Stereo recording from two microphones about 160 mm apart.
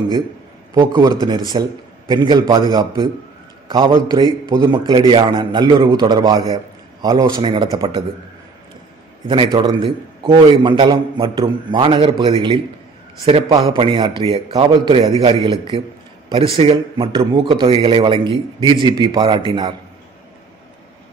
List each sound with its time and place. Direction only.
0.7 s a man's voice: 25° right (ahead or behind)
4.8 s a man's voice: 30° right (ahead or behind)
9.7 s a man's voice: 35° right (ahead or behind)